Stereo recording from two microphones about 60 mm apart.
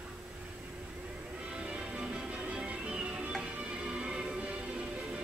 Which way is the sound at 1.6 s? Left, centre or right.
Centre.